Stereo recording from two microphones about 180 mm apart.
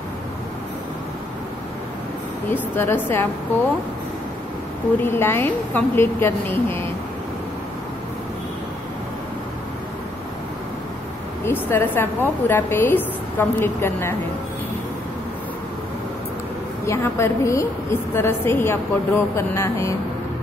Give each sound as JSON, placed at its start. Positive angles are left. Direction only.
{"t": 2.5, "sound": "a woman's voice", "side_deg": 10}
{"t": 5.0, "sound": "a woman's voice", "side_deg": 10}
{"t": 11.6, "sound": "a woman's voice", "side_deg": 10}
{"t": 16.8, "sound": "a woman's voice", "side_deg": 15}